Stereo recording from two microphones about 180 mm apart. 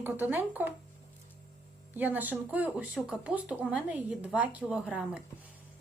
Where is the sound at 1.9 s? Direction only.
10° right (ahead or behind).